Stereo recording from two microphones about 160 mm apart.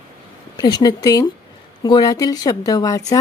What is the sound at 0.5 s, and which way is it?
Speech, 25° left (ahead or behind).